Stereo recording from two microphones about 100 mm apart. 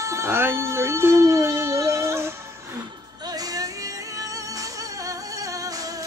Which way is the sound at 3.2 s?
40° right (ahead or behind).